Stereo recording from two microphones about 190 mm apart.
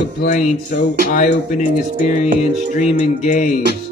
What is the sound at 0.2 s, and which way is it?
Speech, 45° left (ahead or behind).